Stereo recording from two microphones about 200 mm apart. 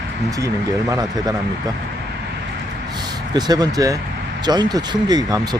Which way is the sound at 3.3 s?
20° right (ahead or behind).